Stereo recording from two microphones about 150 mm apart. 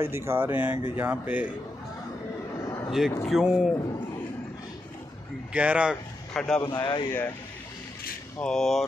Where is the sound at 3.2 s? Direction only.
5° right (ahead or behind).